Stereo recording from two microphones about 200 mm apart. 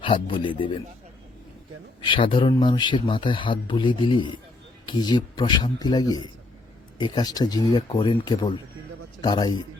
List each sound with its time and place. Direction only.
0.0 s speech: 25° left (ahead or behind)
2.0 s speech: 25° left (ahead or behind)